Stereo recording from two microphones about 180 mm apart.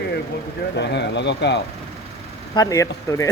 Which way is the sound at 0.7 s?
70° left (ahead or behind).